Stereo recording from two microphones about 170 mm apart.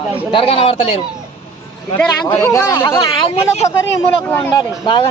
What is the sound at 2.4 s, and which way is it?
Speech, 20° left (ahead or behind).